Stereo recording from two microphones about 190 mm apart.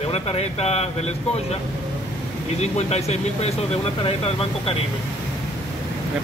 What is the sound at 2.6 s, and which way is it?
Speech, 35° left (ahead or behind).